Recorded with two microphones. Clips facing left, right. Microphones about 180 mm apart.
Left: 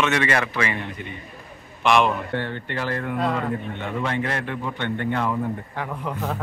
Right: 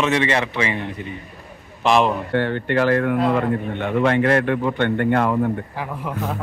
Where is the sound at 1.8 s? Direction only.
35° right (ahead or behind).